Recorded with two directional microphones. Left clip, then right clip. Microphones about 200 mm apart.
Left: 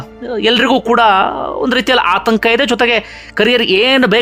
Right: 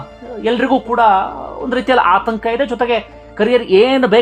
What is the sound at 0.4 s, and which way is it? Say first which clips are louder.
Speech: left 4 dB; 25° left (ahead or behind).